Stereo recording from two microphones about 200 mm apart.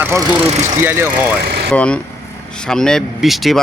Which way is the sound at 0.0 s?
15° right (ahead or behind).